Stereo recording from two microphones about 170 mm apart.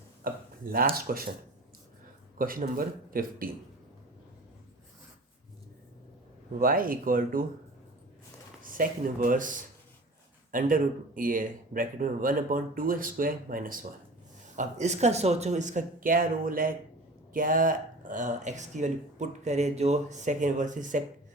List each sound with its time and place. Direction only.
0.2 s speech: 60° right (ahead or behind)
2.4 s speech: 55° right (ahead or behind)
6.5 s speech: 55° right (ahead or behind)
8.6 s speech: 55° right (ahead or behind)